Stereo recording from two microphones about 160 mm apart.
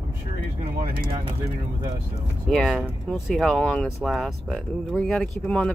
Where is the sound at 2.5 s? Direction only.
Centre (ahead or behind).